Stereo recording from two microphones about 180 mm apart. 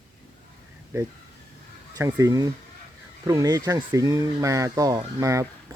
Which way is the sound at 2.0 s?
15° right (ahead or behind).